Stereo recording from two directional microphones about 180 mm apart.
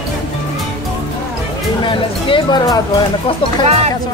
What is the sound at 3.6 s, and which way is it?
Speech, 35° right (ahead or behind).